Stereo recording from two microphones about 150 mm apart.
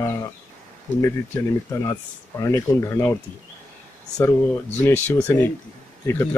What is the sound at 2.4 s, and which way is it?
Speech, 20° left (ahead or behind).